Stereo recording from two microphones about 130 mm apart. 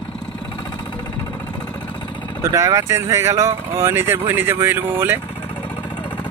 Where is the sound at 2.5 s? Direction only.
20° right (ahead or behind).